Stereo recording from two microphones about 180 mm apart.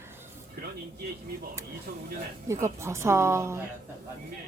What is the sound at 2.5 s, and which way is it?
Speech, 15° right (ahead or behind).